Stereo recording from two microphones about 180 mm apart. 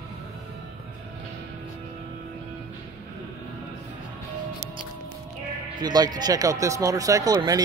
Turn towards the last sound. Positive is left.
turn(degrees=-20)  # may be behind; listen again after turning